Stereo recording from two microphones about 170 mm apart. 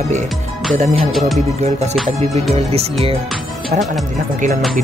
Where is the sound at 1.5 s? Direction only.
40° right (ahead or behind).